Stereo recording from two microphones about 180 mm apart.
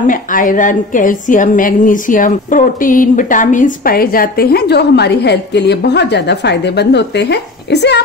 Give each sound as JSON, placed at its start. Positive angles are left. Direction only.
{"t": 0.0, "sound": "a woman's voice", "side_deg": 50}